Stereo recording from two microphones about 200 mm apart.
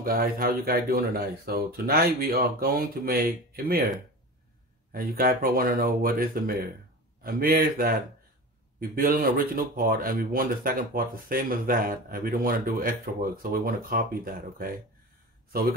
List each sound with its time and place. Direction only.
0.0 s speech: 45° right (ahead or behind)
4.9 s speech: 45° right (ahead or behind)